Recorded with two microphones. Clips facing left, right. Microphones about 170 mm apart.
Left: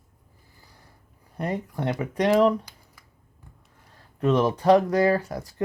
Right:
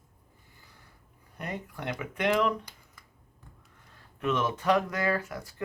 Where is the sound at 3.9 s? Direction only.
35° left (ahead or behind).